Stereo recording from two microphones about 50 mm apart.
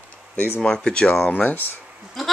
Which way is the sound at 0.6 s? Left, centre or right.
Centre.